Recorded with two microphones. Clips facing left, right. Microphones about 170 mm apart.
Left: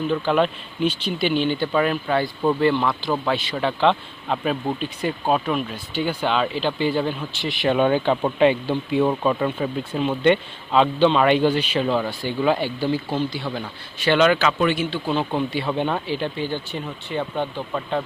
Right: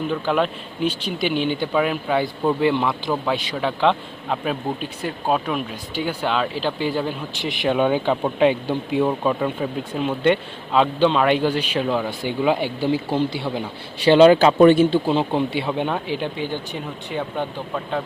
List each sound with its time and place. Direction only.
0.1 s speech: 5° right (ahead or behind)
3.1 s speech: centre (ahead or behind); by 14.3 s 30° right (ahead or behind)
14.4 s speech: 40° right (ahead or behind)
15.0 s speech: 25° right (ahead or behind); by 17.4 s 10° right (ahead or behind)